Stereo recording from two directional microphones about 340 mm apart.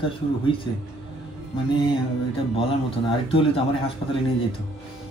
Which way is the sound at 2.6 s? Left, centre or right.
Centre.